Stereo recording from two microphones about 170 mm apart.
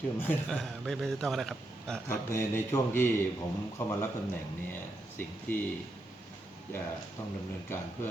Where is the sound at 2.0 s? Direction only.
15° left (ahead or behind).